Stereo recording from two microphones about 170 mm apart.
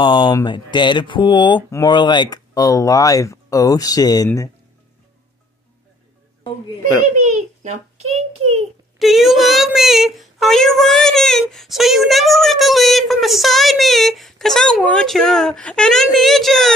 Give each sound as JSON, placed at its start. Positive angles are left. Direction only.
{"t": 0.0, "sound": "speech", "side_deg": 25}
{"t": 6.8, "sound": "a child's voice", "side_deg": -45}
{"t": 8.9, "sound": "a woman's voice", "side_deg": 0}